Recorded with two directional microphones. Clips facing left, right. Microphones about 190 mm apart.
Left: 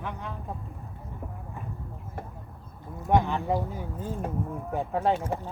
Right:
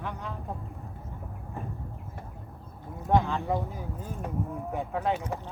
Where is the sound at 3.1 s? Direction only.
15° left (ahead or behind).